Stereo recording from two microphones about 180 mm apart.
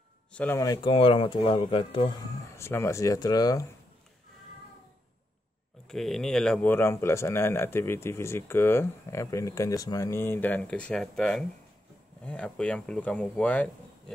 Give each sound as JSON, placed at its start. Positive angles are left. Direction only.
{"t": 0.3, "sound": "speech", "side_deg": 10}
{"t": 0.7, "sound": "speech", "side_deg": 30}
{"t": 5.9, "sound": "speech", "side_deg": 0}